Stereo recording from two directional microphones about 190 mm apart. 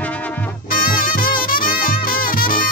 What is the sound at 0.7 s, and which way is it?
Music, 50° left (ahead or behind).